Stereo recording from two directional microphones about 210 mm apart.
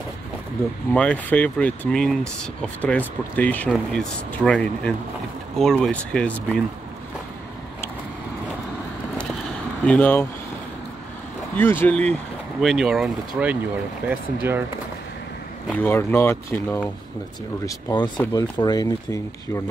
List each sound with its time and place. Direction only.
0.9 s speech: 5° left (ahead or behind)
9.8 s speech: 10° left (ahead or behind)
11.5 s speech: 10° left (ahead or behind); by 14.6 s 10° right (ahead or behind)
15.7 s speech: 10° left (ahead or behind)